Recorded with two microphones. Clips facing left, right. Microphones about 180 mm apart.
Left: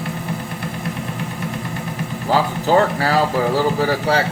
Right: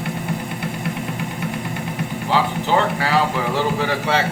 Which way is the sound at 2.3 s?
40° left (ahead or behind).